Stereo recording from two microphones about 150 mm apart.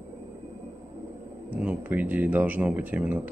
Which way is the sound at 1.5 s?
10° right (ahead or behind).